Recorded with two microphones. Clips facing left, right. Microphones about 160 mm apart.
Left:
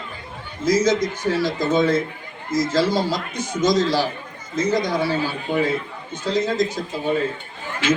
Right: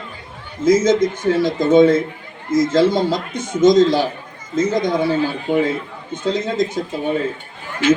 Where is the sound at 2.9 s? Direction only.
25° right (ahead or behind).